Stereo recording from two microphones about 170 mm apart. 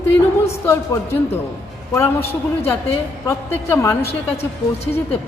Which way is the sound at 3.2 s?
15° left (ahead or behind).